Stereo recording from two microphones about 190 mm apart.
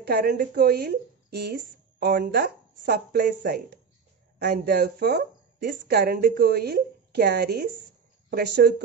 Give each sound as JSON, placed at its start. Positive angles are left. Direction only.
{"t": 0.0, "sound": "speech", "side_deg": -55}